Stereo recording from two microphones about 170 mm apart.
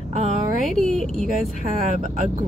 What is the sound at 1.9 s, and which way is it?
Speech, 45° right (ahead or behind).